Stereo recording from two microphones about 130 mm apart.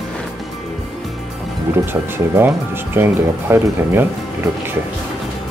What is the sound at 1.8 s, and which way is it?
Speech, 15° right (ahead or behind).